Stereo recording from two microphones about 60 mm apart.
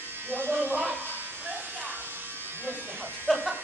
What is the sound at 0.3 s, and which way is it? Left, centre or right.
Electric shaver, right.